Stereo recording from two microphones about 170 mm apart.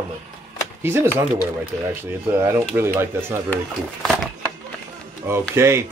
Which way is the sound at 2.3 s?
15° right (ahead or behind).